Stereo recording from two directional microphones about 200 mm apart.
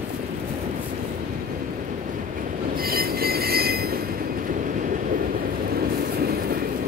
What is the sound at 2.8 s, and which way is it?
Train wheels squealing, 50° right (ahead or behind).